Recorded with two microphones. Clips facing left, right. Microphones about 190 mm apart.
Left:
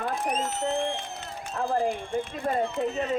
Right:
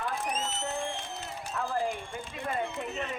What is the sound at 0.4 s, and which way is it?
Speech, 55° left (ahead or behind).